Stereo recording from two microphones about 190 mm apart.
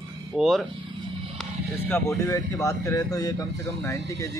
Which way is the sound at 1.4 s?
10° left (ahead or behind).